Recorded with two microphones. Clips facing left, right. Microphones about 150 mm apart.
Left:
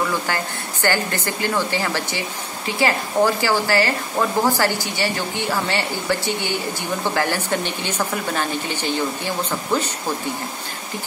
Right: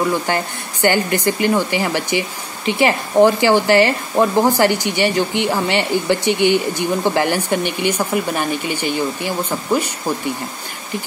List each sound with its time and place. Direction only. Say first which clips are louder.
0.3 s speech: right 4 dB; 20° right (ahead or behind)